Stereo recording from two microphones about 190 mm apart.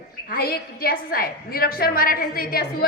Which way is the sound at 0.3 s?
50° left (ahead or behind).